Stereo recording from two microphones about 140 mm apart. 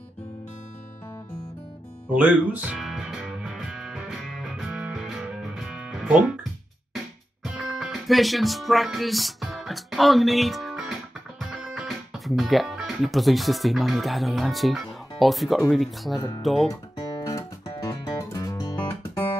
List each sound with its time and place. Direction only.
2.1 s music: 10° right (ahead or behind)
7.4 s music: 5° right (ahead or behind)
15.7 s speech: centre (ahead or behind)
17.2 s music: 25° left (ahead or behind)